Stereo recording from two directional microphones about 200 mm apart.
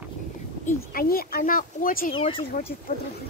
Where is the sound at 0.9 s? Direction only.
50° left (ahead or behind).